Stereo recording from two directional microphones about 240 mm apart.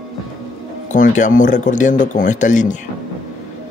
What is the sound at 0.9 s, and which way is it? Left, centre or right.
Speech, left.